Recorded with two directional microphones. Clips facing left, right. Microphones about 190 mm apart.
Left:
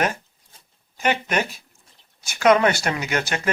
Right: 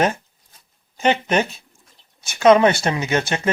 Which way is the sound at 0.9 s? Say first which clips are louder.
Right 4 dB; 25° right (ahead or behind).